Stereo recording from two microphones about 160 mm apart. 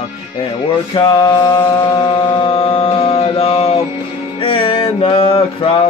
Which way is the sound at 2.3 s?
35° left (ahead or behind).